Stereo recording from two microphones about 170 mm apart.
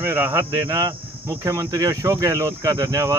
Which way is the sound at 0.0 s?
15° right (ahead or behind).